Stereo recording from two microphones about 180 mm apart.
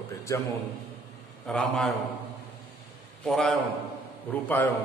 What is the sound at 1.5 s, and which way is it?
Speech, 5° left (ahead or behind).